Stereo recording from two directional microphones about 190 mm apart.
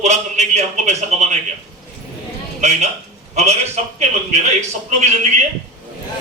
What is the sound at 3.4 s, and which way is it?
A man's voice, 35° right (ahead or behind).